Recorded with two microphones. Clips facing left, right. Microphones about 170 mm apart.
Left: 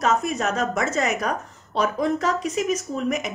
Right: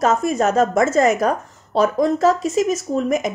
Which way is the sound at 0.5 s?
45° right (ahead or behind).